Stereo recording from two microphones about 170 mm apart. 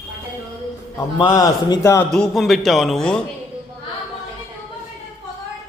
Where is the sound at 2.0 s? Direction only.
5° left (ahead or behind).